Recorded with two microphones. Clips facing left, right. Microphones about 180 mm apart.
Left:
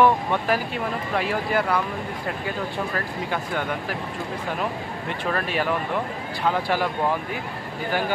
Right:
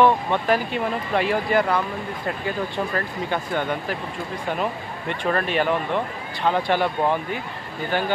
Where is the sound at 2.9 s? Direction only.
5° left (ahead or behind).